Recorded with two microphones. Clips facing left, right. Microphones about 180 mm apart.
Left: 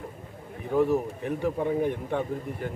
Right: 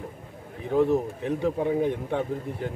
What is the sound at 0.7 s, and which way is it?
A man's voice, 20° right (ahead or behind).